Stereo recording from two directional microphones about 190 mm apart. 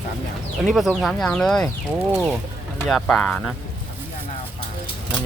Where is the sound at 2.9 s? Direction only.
Centre (ahead or behind).